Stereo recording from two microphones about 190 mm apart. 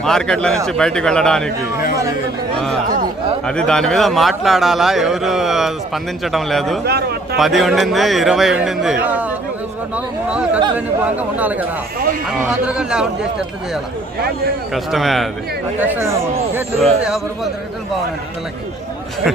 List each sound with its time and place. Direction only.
0.0 s a man's voice: 5° left (ahead or behind)
3.4 s a man's voice: 5° left (ahead or behind)
6.8 s a man's voice: 55° right (ahead or behind)
7.3 s a man's voice: centre (ahead or behind)
14.7 s a man's voice: centre (ahead or behind)
15.8 s speech: 10° right (ahead or behind)
16.8 s a man's voice: centre (ahead or behind)